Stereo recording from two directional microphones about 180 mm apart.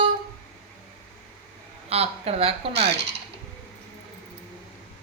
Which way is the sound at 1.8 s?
35° right (ahead or behind).